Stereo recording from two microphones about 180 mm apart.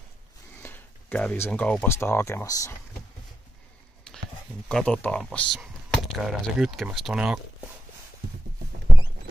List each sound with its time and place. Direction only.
0.6 s speech: 10° left (ahead or behind)
4.6 s speech: 5° left (ahead or behind)